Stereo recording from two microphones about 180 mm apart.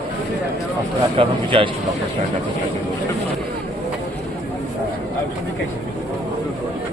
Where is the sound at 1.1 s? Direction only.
30° right (ahead or behind).